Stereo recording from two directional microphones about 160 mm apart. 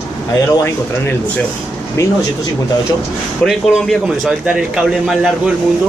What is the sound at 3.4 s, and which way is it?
A man's voice, centre (ahead or behind).